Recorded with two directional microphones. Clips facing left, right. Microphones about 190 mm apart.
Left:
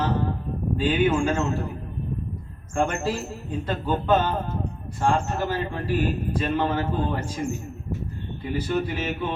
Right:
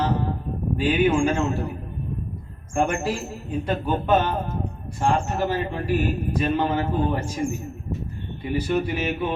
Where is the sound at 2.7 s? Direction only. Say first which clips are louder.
Right 1 dB; 10° right (ahead or behind).